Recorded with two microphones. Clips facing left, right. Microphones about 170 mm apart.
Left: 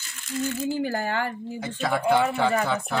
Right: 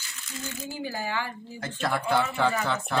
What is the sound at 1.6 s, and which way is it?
Speech, centre (ahead or behind).